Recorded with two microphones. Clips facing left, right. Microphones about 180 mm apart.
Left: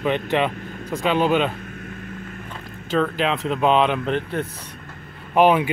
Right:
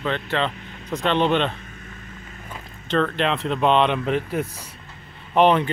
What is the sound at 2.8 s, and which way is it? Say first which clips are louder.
Speech: even; 5° left (ahead or behind).